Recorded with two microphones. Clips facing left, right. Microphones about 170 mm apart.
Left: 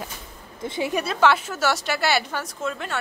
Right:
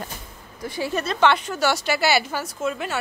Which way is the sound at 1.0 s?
5° left (ahead or behind).